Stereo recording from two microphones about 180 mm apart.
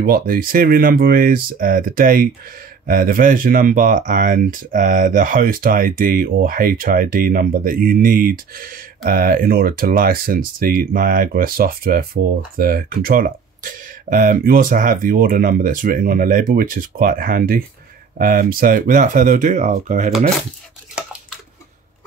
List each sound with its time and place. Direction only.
0.0 s speech: 50° right (ahead or behind)